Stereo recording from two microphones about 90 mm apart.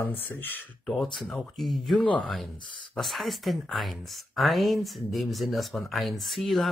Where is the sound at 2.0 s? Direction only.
15° left (ahead or behind).